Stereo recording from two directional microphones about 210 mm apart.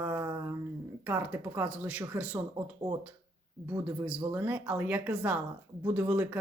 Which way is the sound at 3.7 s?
10° right (ahead or behind).